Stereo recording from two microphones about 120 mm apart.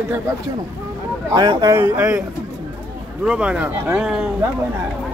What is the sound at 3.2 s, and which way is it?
Speech, 5° right (ahead or behind).